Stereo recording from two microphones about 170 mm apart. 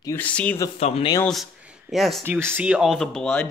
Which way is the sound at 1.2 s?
5° right (ahead or behind).